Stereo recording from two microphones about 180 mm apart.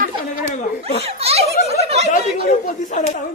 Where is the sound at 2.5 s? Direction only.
45° left (ahead or behind).